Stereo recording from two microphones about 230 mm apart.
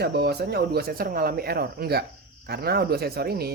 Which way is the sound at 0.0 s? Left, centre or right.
Right.